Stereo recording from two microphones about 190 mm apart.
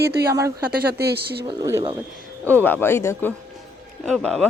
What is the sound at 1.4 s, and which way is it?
Speech, 20° right (ahead or behind).